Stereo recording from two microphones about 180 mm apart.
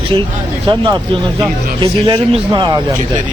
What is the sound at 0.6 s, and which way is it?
A man's voice, 25° right (ahead or behind).